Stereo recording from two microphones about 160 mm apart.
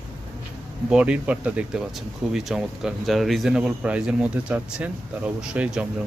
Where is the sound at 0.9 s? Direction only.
5° right (ahead or behind).